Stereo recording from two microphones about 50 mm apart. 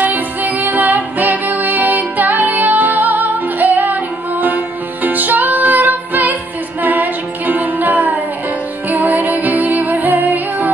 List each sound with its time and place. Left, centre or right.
0.0 s music: right
6.8 s a capella: right
8.8 s music: right